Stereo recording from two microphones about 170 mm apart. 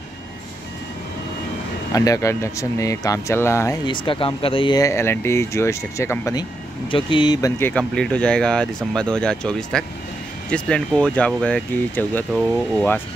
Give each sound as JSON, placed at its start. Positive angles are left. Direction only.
{"t": 2.0, "sound": "speech", "side_deg": 20}
{"t": 3.8, "sound": "speech", "side_deg": 30}
{"t": 6.9, "sound": "speech", "side_deg": 30}
{"t": 7.5, "sound": "speech", "side_deg": 10}